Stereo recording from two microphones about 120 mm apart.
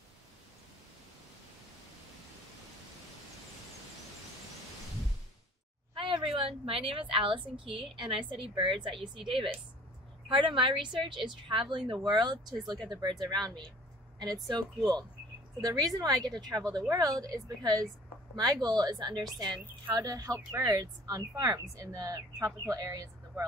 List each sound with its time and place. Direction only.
5.9 s a woman's voice: 45° right (ahead or behind); by 23.4 s 30° right (ahead or behind)